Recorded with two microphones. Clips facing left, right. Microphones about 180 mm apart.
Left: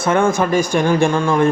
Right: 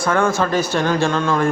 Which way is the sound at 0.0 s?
20° left (ahead or behind).